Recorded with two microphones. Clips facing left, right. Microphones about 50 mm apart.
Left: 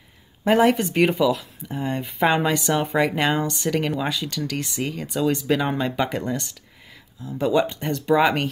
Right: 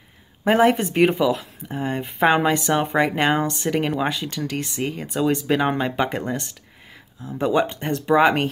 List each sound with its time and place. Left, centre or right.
0.4 s speech: right
2.2 s speech: centre
2.6 s speech: right
7.6 s speech: right
8.1 s speech: right